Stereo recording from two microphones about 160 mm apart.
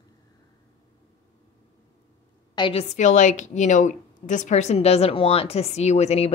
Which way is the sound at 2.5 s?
35° left (ahead or behind).